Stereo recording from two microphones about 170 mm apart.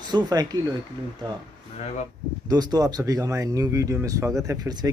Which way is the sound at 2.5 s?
25° right (ahead or behind).